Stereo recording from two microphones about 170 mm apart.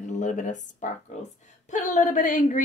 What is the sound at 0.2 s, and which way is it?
A woman's voice, 45° left (ahead or behind).